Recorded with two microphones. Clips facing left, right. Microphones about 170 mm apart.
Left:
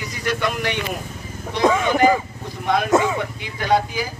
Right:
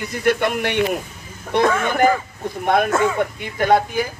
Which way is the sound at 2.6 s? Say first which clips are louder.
Right 3 dB; 55° right (ahead or behind).